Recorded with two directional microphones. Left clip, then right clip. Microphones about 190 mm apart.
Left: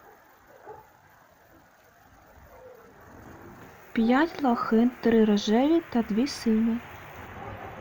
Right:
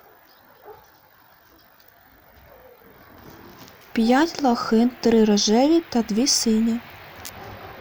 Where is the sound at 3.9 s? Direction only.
10° right (ahead or behind).